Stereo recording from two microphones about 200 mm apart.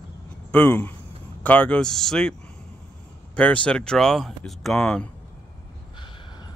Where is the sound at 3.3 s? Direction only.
5° left (ahead or behind).